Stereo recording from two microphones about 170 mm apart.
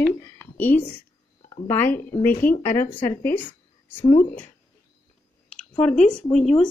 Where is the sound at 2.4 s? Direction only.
55° left (ahead or behind).